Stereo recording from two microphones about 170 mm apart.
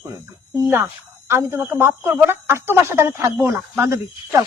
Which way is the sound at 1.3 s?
15° right (ahead or behind).